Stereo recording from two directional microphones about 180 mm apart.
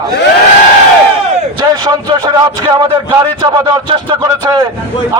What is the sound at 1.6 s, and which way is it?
A man's voice, 25° right (ahead or behind).